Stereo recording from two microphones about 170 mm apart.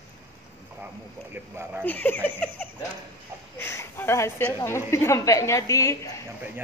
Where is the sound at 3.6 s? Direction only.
15° left (ahead or behind).